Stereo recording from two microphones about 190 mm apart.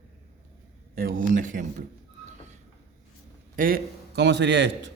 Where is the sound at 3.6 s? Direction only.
50° right (ahead or behind); by 4.9 s 65° right (ahead or behind).